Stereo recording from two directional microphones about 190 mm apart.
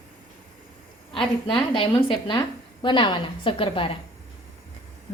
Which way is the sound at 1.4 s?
25° left (ahead or behind).